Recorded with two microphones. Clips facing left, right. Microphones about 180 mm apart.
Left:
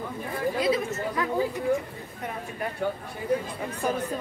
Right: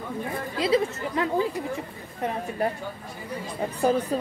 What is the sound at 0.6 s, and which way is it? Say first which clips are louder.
Speech: right 5 dB; 30° right (ahead or behind).